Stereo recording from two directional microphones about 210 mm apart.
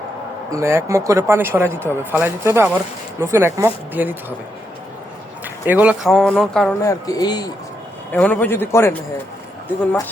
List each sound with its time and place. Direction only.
0.5 s speech: 15° right (ahead or behind)
5.6 s speech: 10° right (ahead or behind)
6.8 s speech: 20° left (ahead or behind)
8.1 s a man's voice: 10° left (ahead or behind)